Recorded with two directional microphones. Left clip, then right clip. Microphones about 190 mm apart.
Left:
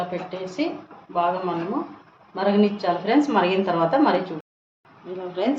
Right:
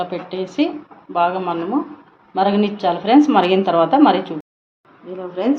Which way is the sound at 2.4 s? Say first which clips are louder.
Right 4 dB; 40° right (ahead or behind).